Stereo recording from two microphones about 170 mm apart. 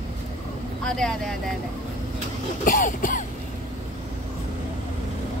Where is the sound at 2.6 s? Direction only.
50° left (ahead or behind).